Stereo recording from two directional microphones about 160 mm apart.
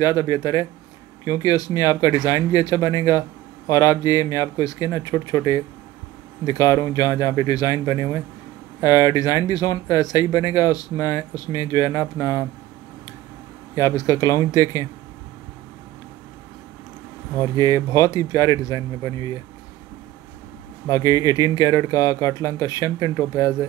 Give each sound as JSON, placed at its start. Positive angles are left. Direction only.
{"t": 0.0, "sound": "speech", "side_deg": 25}
{"t": 13.7, "sound": "speech", "side_deg": 20}
{"t": 17.6, "sound": "speech", "side_deg": 20}
{"t": 20.9, "sound": "speech", "side_deg": 20}